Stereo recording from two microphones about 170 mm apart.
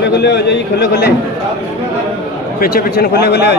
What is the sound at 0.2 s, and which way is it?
Speech, 90° left.